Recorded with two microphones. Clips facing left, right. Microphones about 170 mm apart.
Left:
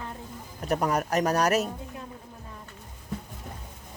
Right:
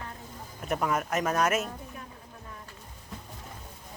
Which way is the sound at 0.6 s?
40° left (ahead or behind).